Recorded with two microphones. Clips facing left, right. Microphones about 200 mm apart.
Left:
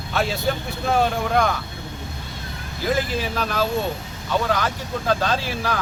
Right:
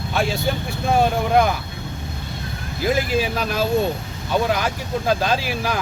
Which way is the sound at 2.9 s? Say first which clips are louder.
Right 2 dB; 15° right (ahead or behind).